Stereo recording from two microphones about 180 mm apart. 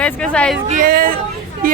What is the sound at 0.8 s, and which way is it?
Speech, 50° right (ahead or behind).